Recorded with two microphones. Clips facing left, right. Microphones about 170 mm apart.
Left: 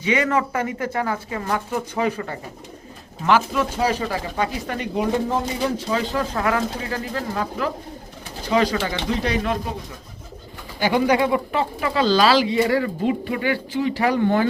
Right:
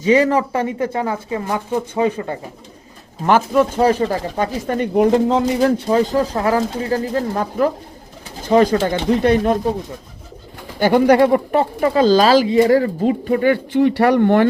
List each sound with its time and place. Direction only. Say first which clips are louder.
0.0 s speech: right 6 dB; 35° right (ahead or behind)
3.2 s speech: right 5 dB; 45° right (ahead or behind)
5.1 s speech: right 7 dB; 75° right (ahead or behind)
5.9 s speech: right 7 dB; 40° right (ahead or behind)
10.8 s speech: right 7 dB; 50° right (ahead or behind); by 14.4 s 65° right (ahead or behind)